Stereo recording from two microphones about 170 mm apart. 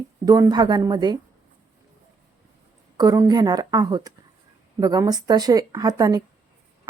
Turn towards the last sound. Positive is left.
turn(degrees=-20)  # may be behind; listen again after turning